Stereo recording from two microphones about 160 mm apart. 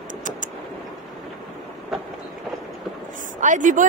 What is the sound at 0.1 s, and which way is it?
Vehicle, 55° right (ahead or behind).